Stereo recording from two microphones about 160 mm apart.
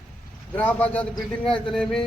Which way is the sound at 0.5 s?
10° left (ahead or behind).